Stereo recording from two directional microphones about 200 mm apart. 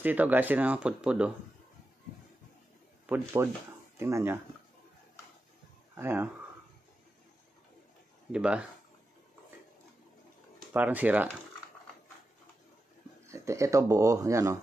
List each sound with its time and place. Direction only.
0.0 s speech: 10° right (ahead or behind)
3.1 s speech: 10° right (ahead or behind)
5.9 s speech: 10° right (ahead or behind)
8.3 s speech: 5° right (ahead or behind)
10.7 s speech: 10° right (ahead or behind)
13.3 s speech: 15° right (ahead or behind)